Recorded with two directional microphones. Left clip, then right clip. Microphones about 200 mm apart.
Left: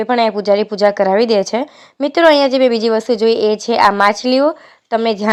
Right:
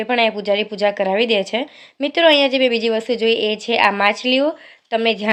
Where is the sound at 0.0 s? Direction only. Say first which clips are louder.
Left 3 dB; 25° left (ahead or behind).